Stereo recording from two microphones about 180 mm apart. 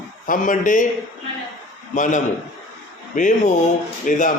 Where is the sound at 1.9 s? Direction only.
45° left (ahead or behind).